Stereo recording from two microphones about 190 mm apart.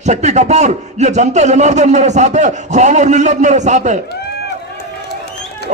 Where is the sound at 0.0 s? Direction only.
35° right (ahead or behind).